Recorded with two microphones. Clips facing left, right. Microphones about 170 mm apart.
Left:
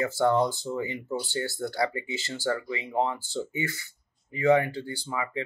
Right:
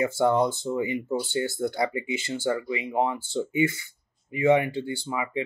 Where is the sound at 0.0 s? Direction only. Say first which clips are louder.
Right 2 dB; 20° right (ahead or behind).